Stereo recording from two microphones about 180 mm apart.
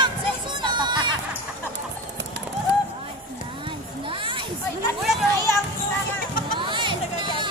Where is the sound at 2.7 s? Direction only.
70° right (ahead or behind).